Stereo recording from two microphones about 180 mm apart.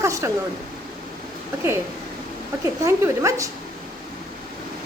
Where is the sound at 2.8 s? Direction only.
15° right (ahead or behind).